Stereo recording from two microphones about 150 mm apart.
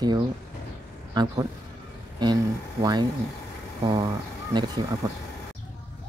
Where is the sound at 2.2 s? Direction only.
30° right (ahead or behind).